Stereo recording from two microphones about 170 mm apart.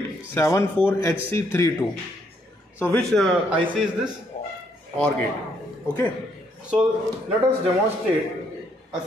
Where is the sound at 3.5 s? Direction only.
5° right (ahead or behind).